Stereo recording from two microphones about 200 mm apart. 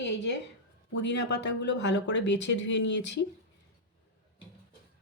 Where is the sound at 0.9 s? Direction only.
60° left (ahead or behind).